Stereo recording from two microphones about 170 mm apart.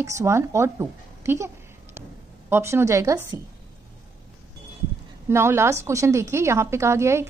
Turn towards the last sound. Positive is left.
turn(degrees=-15)  # may be behind; listen again after turning